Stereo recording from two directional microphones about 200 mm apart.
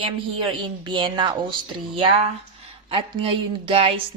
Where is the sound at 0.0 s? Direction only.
25° right (ahead or behind).